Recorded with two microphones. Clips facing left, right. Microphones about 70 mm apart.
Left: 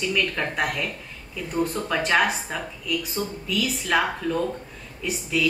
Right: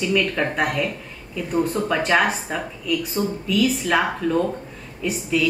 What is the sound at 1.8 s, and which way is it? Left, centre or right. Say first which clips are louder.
Speech: right 1 dB; centre.